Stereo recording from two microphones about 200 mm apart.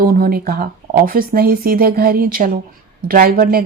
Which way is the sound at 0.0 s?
45° right (ahead or behind).